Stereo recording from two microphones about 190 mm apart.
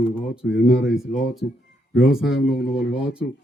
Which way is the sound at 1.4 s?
65° left (ahead or behind).